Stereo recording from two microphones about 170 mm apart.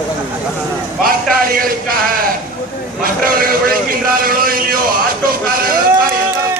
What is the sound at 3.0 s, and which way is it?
A man's voice, 60° right (ahead or behind).